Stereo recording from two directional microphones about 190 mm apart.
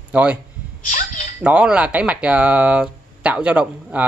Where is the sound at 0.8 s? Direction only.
40° left (ahead or behind).